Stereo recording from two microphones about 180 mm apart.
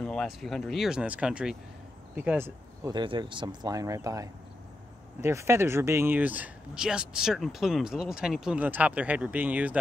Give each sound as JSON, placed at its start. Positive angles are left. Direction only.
{"t": 0.0, "sound": "speech", "side_deg": 0}
{"t": 2.9, "sound": "speech", "side_deg": -25}